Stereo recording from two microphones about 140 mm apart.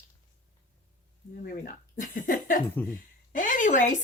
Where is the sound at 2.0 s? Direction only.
70° left (ahead or behind).